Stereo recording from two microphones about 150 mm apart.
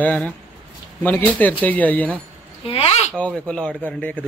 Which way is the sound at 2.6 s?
40° left (ahead or behind).